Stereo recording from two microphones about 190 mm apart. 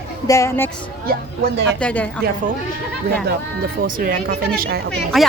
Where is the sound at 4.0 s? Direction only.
50° right (ahead or behind).